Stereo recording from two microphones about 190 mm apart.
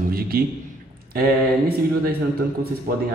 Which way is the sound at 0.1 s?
50° right (ahead or behind).